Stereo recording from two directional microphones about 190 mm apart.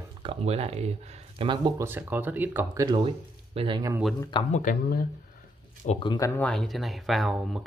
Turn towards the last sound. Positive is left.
turn(degrees=0)  # may be behind; listen again after turning